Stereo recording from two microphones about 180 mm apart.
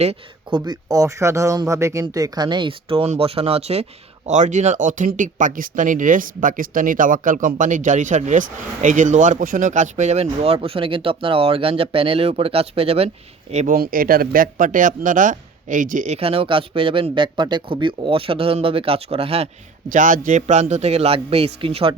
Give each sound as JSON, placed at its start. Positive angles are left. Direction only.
{"t": 0.0, "sound": "speech", "side_deg": -35}
{"t": 0.6, "sound": "speech", "side_deg": -20}
{"t": 13.7, "sound": "speech", "side_deg": -55}
{"t": 19.9, "sound": "speech", "side_deg": -45}